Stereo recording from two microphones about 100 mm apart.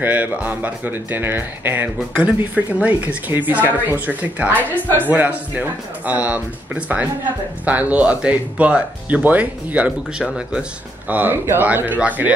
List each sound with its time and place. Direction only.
0.0 s speech: 15° right (ahead or behind)
4.6 s speech: 20° left (ahead or behind)
5.0 s speech: 15° right (ahead or behind)
11.1 s speech: 20° right (ahead or behind)